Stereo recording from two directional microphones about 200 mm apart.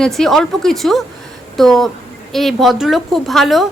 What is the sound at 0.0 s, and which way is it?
Speech, centre (ahead or behind).